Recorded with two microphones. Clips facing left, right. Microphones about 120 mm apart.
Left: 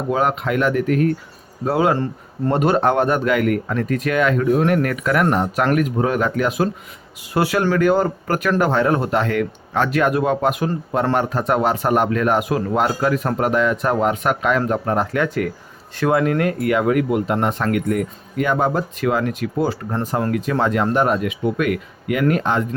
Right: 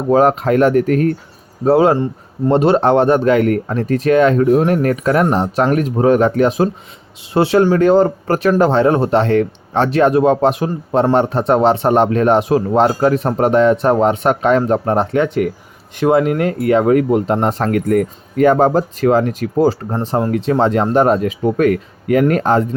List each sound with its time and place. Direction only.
0.1 s speech: 35° right (ahead or behind)
2.0 s speech: 15° right (ahead or behind)
2.6 s speech: 30° right (ahead or behind)